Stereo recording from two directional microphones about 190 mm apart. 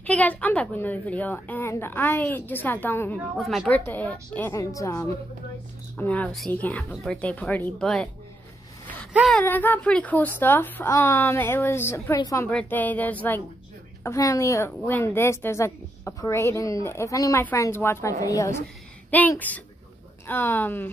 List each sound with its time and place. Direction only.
0.0 s a woman's voice: 10° left (ahead or behind)
3.2 s a woman's voice: centre (ahead or behind)
9.1 s speech: centre (ahead or behind)
9.4 s a woman's voice: 10° left (ahead or behind)